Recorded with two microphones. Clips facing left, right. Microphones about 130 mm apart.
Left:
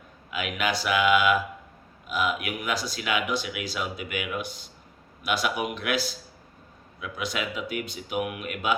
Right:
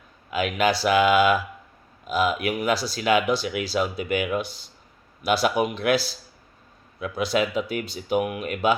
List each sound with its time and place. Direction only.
0.3 s speech: 35° right (ahead or behind)